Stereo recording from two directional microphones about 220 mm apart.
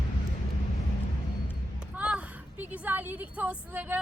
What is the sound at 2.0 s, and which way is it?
A woman's voice, 5° right (ahead or behind).